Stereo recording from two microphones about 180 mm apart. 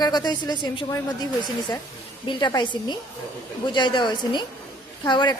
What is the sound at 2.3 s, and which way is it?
Speech, 25° left (ahead or behind).